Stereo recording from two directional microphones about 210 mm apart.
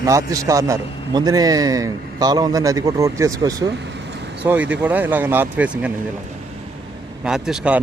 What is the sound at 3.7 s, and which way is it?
Vehicle, 55° right (ahead or behind).